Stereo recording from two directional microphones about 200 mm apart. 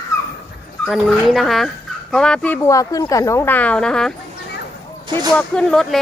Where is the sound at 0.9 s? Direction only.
Centre (ahead or behind).